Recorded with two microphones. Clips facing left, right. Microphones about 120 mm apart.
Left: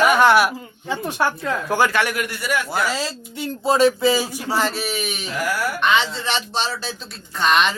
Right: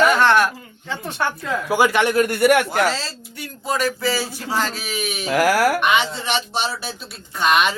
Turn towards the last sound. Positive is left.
turn(degrees=-10)  # may be behind; listen again after turning